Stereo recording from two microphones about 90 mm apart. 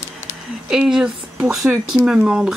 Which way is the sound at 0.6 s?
5° right (ahead or behind).